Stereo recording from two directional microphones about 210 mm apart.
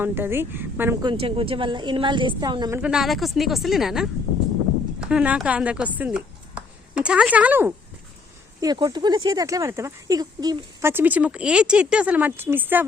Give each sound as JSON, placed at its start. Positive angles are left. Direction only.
{"t": 0.0, "sound": "speech", "side_deg": -10}
{"t": 1.0, "sound": "speech", "side_deg": -25}
{"t": 8.6, "sound": "speech", "side_deg": -20}